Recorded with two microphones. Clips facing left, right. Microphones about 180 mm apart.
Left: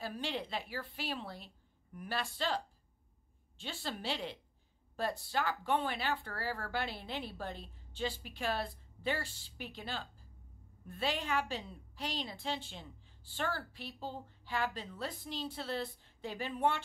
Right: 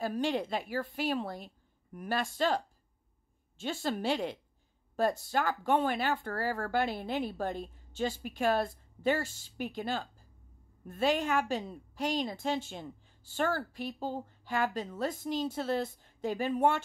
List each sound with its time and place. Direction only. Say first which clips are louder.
0.0 s a woman's voice: right 8 dB; 50° right (ahead or behind)